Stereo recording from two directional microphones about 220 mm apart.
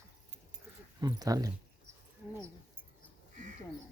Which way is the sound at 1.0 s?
15° right (ahead or behind).